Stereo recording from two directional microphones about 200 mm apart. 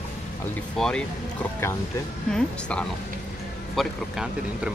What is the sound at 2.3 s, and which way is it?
Speech, 5° left (ahead or behind).